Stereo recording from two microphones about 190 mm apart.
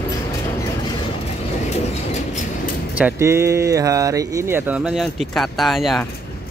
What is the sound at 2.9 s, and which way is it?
Speech, 10° right (ahead or behind).